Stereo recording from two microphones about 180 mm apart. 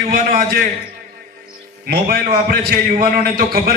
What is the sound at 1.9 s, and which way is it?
A man's voice, 55° right (ahead or behind).